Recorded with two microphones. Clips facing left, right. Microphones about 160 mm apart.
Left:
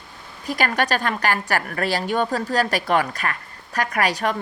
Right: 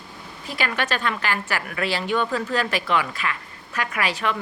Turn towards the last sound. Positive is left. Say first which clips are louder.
# left 3 dB
turn(degrees=40)  # may be behind; listen again after turning